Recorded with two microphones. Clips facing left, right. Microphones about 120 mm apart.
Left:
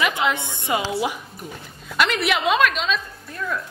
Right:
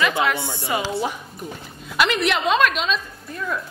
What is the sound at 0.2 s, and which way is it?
Speech, 20° left (ahead or behind).